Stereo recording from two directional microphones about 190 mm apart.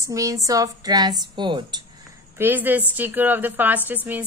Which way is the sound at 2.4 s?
10° right (ahead or behind).